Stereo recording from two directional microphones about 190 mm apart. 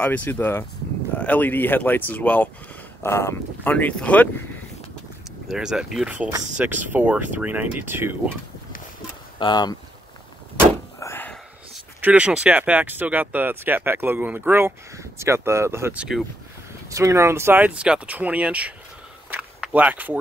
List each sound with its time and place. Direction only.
0.0 s speech: 10° left (ahead or behind)
5.5 s speech: 5° right (ahead or behind)
9.4 s speech: 20° left (ahead or behind)
11.0 s a sound: 10° left (ahead or behind)
11.7 s speech: 5° right (ahead or behind)
16.9 s speech: 15° right (ahead or behind)
19.3 s a sound: 10° right (ahead or behind)